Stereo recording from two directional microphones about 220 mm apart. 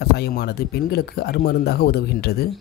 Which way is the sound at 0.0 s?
45° left (ahead or behind).